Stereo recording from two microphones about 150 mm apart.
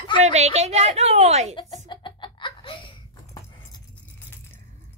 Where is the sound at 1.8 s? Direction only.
30° left (ahead or behind).